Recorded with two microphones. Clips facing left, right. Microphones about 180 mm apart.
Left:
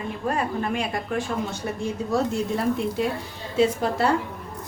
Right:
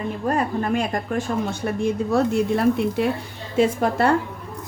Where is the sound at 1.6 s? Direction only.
60° right (ahead or behind).